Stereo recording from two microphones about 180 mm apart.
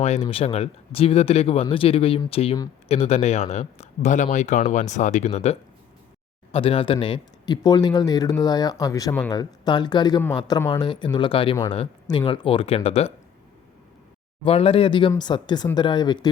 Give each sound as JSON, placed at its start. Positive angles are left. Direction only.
{"t": 0.0, "sound": "speech", "side_deg": 35}
{"t": 14.4, "sound": "speech", "side_deg": 30}